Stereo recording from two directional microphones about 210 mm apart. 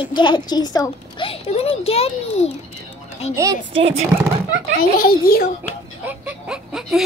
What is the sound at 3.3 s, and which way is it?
Speech, 15° right (ahead or behind).